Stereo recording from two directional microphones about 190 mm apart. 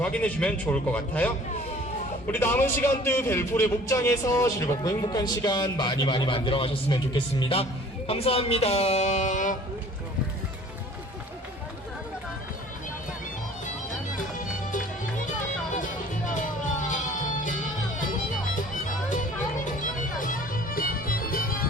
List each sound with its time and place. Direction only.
0.0 s a man's voice: 5° left (ahead or behind); by 9.6 s 40° left (ahead or behind)
19.8 s music: 45° left (ahead or behind)